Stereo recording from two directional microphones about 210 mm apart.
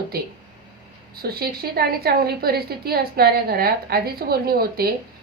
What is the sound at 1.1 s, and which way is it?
A woman's voice, 45° right (ahead or behind).